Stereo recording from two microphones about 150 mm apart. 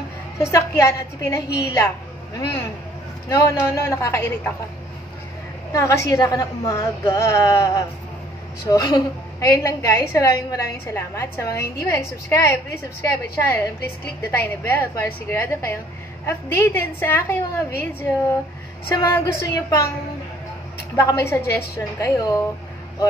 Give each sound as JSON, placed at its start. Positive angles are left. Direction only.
{"t": 0.4, "sound": "a woman's voice", "side_deg": 20}
{"t": 5.7, "sound": "a woman's voice", "side_deg": 20}
{"t": 18.9, "sound": "a woman's voice", "side_deg": 20}
{"t": 20.9, "sound": "a woman's voice", "side_deg": 20}